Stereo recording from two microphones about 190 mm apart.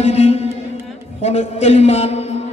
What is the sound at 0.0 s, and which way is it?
A man's voice, 35° left (ahead or behind).